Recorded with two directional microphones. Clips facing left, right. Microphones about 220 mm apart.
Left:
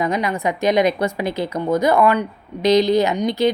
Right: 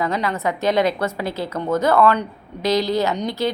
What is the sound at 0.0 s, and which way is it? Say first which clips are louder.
A woman's voice: left 2 dB; 15° left (ahead or behind).